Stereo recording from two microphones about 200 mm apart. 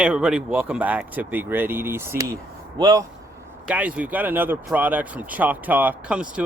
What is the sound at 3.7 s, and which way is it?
Speech, 5° right (ahead or behind).